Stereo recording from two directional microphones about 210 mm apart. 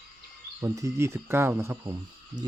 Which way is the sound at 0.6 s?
15° right (ahead or behind).